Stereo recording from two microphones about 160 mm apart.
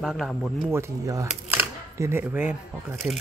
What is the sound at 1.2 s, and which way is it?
Camera, 10° right (ahead or behind).